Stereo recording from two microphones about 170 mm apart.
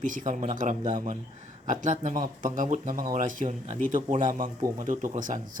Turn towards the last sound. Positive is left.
turn(degrees=-50)  # may be behind; listen again after turning